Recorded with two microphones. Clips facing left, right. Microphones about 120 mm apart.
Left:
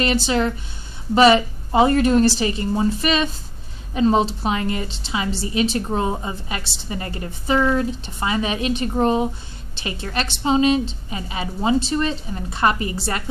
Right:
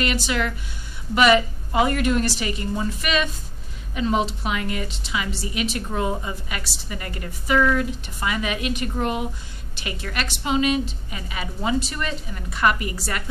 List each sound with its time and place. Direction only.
0.0 s a woman's voice: 30° left (ahead or behind)